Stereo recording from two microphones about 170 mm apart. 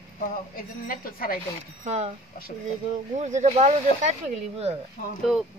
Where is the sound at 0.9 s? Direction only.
60° left (ahead or behind).